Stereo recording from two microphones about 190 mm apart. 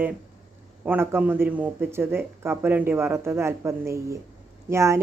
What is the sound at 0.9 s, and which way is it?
Speech, 10° right (ahead or behind).